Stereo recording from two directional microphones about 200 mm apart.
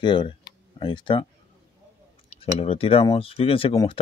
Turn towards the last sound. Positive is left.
turn(degrees=25)  # may be behind; listen again after turning